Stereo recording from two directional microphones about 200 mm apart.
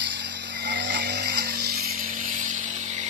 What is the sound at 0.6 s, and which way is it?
Vehicle, 60° right (ahead or behind).